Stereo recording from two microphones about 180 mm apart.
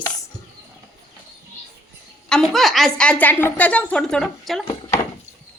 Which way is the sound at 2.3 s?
5° left (ahead or behind).